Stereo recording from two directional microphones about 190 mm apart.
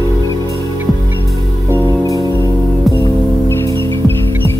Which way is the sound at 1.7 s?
20° left (ahead or behind).